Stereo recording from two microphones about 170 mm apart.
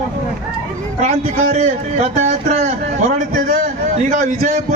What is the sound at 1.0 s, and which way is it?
A man's voice, 45° right (ahead or behind).